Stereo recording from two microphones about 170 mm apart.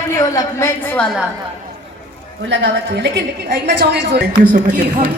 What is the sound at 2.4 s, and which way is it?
A woman's voice, 90° right.